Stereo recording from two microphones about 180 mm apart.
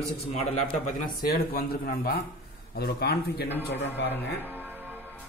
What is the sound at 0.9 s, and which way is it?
Speech, 50° left (ahead or behind).